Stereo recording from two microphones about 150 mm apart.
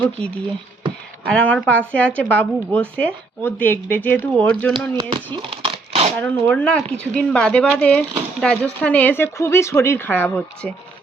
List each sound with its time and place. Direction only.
1.3 s speech: 5° left (ahead or behind)
4.9 s speech: 30° right (ahead or behind)
6.1 s speech: 15° left (ahead or behind)